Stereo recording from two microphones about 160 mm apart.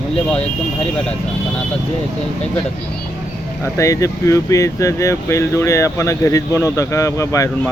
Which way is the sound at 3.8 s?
20° left (ahead or behind).